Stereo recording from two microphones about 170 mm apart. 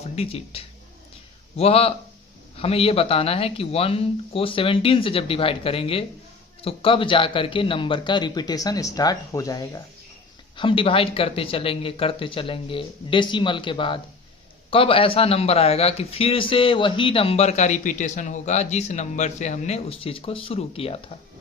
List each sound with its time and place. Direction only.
0.2 s a man's voice: 35° left (ahead or behind)